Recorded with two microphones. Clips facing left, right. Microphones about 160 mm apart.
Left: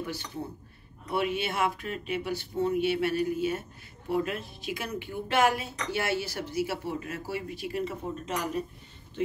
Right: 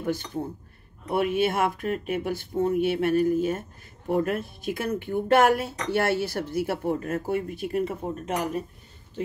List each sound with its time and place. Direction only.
0.0 s speech: 50° right (ahead or behind)